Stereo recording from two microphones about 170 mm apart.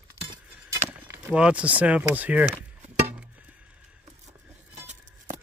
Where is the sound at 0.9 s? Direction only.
10° right (ahead or behind).